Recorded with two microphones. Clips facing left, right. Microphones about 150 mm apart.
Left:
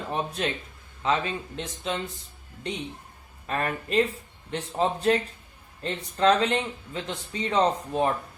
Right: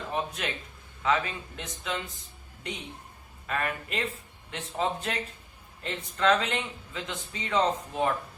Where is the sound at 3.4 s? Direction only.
35° left (ahead or behind).